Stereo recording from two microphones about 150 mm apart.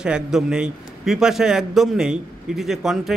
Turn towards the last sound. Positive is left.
turn(degrees=-5)  # may be behind; listen again after turning